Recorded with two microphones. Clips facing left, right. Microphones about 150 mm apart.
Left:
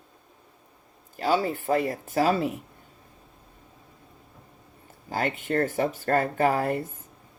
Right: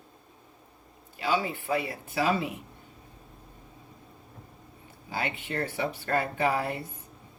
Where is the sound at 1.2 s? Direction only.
45° left (ahead or behind).